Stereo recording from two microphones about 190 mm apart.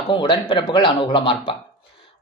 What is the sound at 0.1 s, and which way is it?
Speech, 25° left (ahead or behind).